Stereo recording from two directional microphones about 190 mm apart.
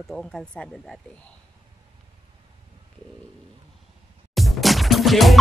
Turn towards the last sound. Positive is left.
turn(degrees=0)  # may be behind; listen again after turning